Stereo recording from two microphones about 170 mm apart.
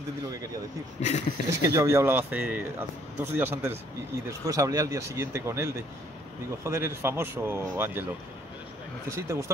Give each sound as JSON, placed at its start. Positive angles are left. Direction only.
{"t": 1.0, "sound": "speech", "side_deg": 40}
{"t": 1.5, "sound": "speech", "side_deg": -20}
{"t": 9.1, "sound": "speech", "side_deg": -15}